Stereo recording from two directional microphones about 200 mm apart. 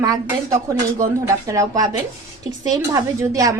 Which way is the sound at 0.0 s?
15° right (ahead or behind).